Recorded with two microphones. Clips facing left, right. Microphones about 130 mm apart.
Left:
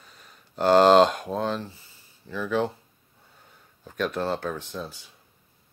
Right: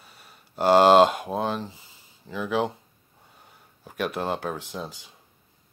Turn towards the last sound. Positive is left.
turn(degrees=-15)  # may be behind; listen again after turning